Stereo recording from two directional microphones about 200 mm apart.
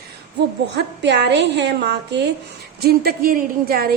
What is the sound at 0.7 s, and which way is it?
A woman's voice, 60° right (ahead or behind).